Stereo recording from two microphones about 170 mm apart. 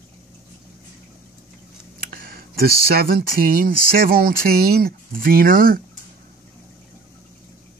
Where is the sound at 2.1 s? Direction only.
60° right (ahead or behind).